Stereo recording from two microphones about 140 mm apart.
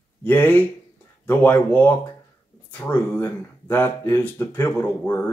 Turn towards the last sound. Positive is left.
turn(degrees=15)  # may be behind; listen again after turning